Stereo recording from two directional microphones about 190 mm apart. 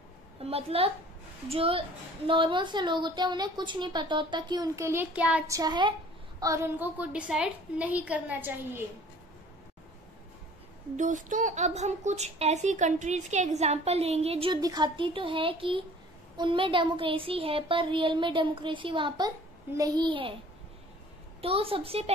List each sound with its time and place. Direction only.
0.4 s a woman's voice: 30° right (ahead or behind); by 5.6 s 5° right (ahead or behind)
5.6 s a woman's voice: 25° right (ahead or behind)
11.0 s a woman's voice: 40° right (ahead or behind); by 20.3 s 25° right (ahead or behind)
21.4 s a woman's voice: 30° right (ahead or behind)